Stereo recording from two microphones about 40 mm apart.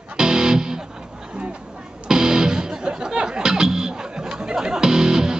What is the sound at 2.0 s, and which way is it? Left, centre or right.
Music, centre.